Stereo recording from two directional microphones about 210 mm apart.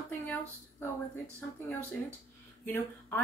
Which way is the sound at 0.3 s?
10° left (ahead or behind).